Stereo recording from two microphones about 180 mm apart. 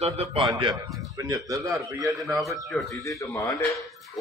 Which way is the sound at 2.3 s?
Centre (ahead or behind).